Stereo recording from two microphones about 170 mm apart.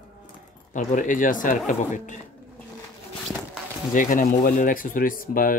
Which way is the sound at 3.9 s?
50° left (ahead or behind).